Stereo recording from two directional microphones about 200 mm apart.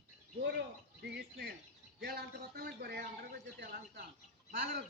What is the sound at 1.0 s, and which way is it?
A man's voice, 55° right (ahead or behind).